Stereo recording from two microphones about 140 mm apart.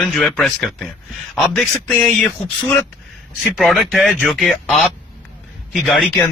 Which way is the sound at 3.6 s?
Centre (ahead or behind).